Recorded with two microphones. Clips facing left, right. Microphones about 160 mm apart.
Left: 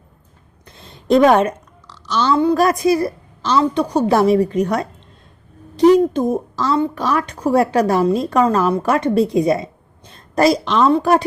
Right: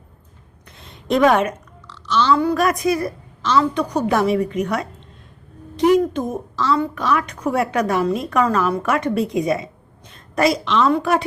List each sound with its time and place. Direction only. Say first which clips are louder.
0.8 s a sound: left 4 dB; 35° left (ahead or behind)
2.3 s a woman's voice: left 4 dB; 25° left (ahead or behind)
6.0 s a woman's voice: left 5 dB; 30° left (ahead or behind)
6.7 s a woman's voice: left 4 dB; 25° left (ahead or behind)
7.0 s a woman's voice: left 2 dB; 35° left (ahead or behind)